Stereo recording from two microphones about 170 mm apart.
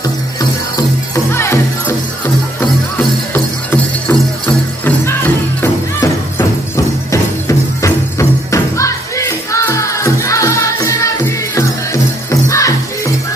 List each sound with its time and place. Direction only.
0.0 s music: 20° left (ahead or behind)
3.3 s music: 10° left (ahead or behind)